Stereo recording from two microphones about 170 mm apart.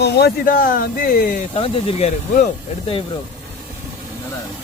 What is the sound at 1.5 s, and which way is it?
Speech, 35° left (ahead or behind).